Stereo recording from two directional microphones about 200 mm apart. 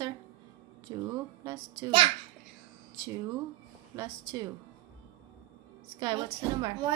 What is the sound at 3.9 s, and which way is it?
Speech, 15° right (ahead or behind).